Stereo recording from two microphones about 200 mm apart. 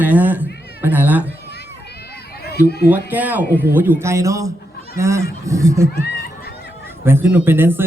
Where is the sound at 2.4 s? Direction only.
55° left (ahead or behind).